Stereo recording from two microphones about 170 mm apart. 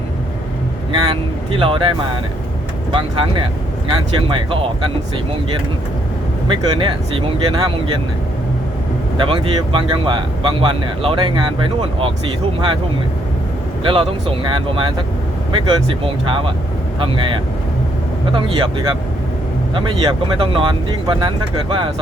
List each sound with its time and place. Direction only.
1.0 s speech: 30° right (ahead or behind)
2.9 s speech: 30° right (ahead or behind)
6.5 s speech: 30° right (ahead or behind)
9.3 s speech: 30° right (ahead or behind)
13.8 s speech: 30° right (ahead or behind)
19.7 s speech: 30° right (ahead or behind)